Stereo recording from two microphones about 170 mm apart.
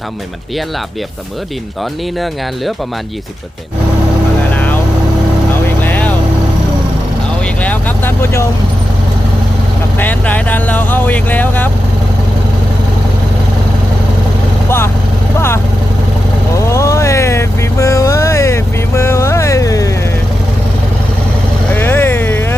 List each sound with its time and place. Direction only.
4.5 s vehicle: 10° left (ahead or behind)
5.8 s vehicle: 10° left (ahead or behind)
7.6 s vehicle: 10° left (ahead or behind)
10.0 s speech: 10° left (ahead or behind)
15.4 s vehicle: 15° left (ahead or behind)
21.7 s vehicle: 10° left (ahead or behind)